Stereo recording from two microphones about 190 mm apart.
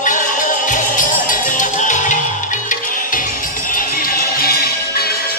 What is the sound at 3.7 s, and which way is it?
Music, 50° left (ahead or behind).